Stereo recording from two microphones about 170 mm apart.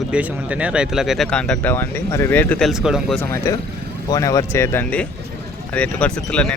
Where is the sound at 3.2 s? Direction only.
15° left (ahead or behind).